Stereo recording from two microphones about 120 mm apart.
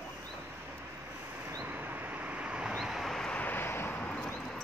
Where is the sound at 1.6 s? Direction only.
15° right (ahead or behind); by 4.6 s 5° left (ahead or behind).